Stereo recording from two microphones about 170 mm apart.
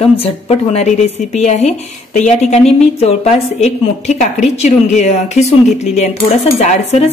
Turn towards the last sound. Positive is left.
turn(degrees=35)  # may be behind; listen again after turning